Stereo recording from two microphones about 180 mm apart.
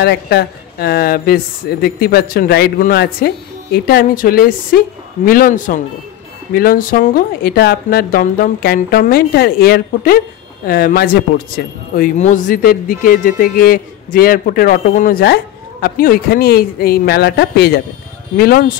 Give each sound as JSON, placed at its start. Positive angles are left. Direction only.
{"t": 0.0, "sound": "a woman's voice", "side_deg": 65}